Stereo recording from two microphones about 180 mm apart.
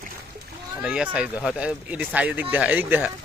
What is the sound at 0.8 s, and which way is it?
Speech, 5° right (ahead or behind).